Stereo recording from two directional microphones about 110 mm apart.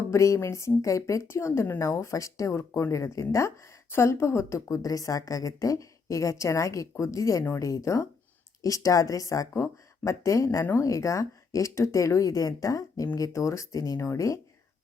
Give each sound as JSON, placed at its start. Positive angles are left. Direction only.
{"t": 0.1, "sound": "a woman's voice", "side_deg": 25}